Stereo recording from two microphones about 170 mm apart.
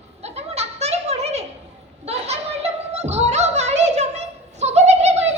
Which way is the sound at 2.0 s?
40° right (ahead or behind).